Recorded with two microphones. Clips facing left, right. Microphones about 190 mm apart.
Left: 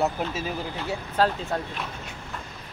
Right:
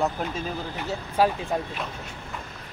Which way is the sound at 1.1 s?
10° right (ahead or behind).